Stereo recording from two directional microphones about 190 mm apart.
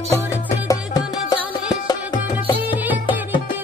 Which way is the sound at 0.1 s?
15° left (ahead or behind).